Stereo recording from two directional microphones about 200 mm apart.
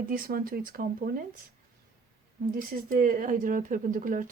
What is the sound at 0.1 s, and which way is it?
Speech, 45° right (ahead or behind).